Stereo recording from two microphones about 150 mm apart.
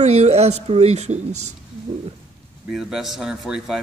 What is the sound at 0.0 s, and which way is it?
Speech, 50° right (ahead or behind).